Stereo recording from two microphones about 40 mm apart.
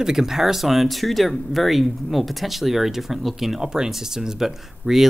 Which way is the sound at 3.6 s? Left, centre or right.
Centre.